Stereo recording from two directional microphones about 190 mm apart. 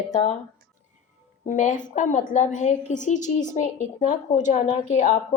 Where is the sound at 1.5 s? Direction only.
40° left (ahead or behind).